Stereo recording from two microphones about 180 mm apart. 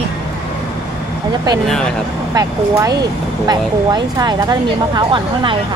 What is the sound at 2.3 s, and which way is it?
Speech, 20° right (ahead or behind).